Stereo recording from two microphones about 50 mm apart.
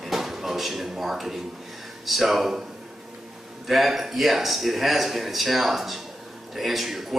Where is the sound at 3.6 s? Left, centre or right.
Centre.